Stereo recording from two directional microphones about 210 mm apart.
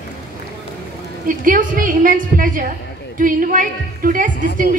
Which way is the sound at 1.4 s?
40° right (ahead or behind).